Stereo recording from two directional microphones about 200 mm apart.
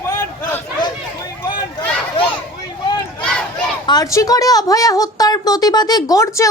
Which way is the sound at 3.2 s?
5° left (ahead or behind).